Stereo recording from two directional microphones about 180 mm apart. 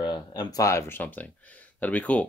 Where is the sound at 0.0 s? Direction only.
25° left (ahead or behind).